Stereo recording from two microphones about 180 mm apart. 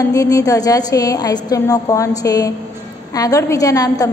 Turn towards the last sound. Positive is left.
turn(degrees=20)  # may be behind; listen again after turning